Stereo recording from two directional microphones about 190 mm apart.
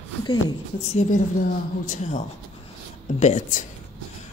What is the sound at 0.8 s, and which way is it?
Speech, 35° left (ahead or behind).